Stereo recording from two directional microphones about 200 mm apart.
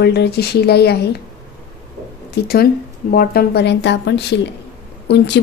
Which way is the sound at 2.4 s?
55° left (ahead or behind).